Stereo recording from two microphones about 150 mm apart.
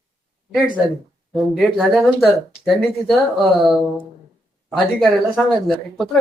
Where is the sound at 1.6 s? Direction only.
5° right (ahead or behind).